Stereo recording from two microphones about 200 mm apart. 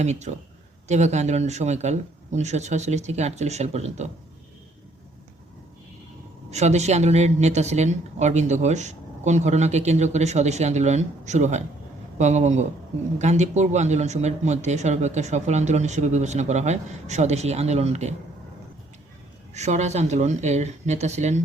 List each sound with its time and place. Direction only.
0.0 s speech: 35° right (ahead or behind)
6.5 s speech: 35° right (ahead or behind)
19.5 s speech: 35° right (ahead or behind)